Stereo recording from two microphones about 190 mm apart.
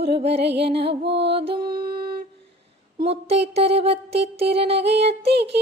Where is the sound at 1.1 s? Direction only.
65° right (ahead or behind).